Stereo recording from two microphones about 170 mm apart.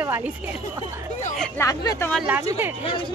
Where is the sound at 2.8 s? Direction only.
30° left (ahead or behind).